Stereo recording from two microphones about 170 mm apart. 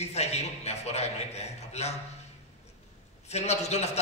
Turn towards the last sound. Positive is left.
turn(degrees=40)  # may be behind; listen again after turning